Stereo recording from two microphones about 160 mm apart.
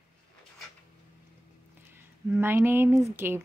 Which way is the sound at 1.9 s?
15° right (ahead or behind).